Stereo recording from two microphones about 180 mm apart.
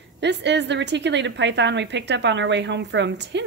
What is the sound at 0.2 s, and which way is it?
A woman's voice, 75° right (ahead or behind).